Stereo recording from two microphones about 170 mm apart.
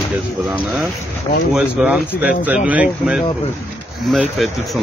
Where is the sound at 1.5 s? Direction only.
5° right (ahead or behind).